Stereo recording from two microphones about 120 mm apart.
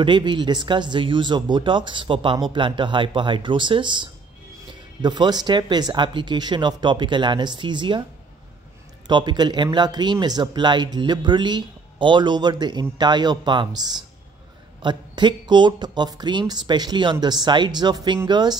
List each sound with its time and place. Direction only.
0.0 s speech: 40° right (ahead or behind)
9.0 s speech: 40° right (ahead or behind)